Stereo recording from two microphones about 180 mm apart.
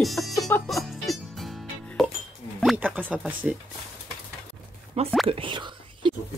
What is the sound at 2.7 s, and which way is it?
Speech, 10° right (ahead or behind).